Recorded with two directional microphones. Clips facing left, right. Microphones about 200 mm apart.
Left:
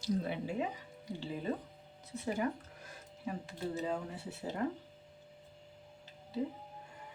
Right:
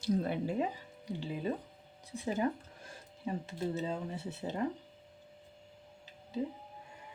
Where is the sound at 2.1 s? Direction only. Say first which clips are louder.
Right 2 dB; 15° right (ahead or behind).